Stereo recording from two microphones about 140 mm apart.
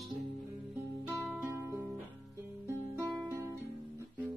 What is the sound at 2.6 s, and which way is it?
Guitar, 15° right (ahead or behind).